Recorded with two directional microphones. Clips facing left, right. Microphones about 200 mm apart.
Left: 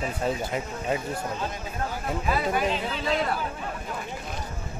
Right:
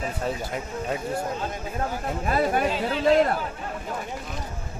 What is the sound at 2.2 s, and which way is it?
Speech, 50° right (ahead or behind).